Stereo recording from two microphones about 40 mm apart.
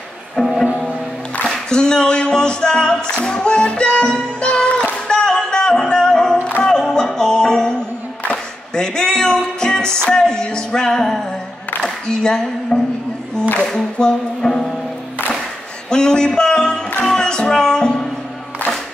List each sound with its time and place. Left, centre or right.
0.4 s music: centre
1.7 s music: left
12.1 s a sound: centre
13.9 s music: centre
15.9 s a sound: centre
17.0 s music: centre